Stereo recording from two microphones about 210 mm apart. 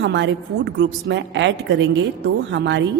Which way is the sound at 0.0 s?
55° right (ahead or behind).